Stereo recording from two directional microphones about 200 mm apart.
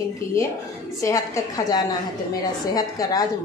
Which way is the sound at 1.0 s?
15° left (ahead or behind).